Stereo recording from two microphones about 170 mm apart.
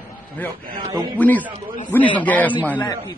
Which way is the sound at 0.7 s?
30° right (ahead or behind).